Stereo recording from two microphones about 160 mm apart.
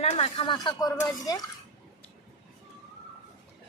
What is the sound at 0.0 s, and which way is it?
Speech, 40° left (ahead or behind).